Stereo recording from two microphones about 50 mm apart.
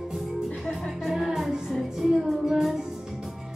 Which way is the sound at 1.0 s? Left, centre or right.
Centre.